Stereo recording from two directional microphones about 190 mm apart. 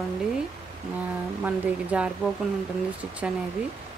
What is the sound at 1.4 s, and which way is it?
Speech, 5° right (ahead or behind).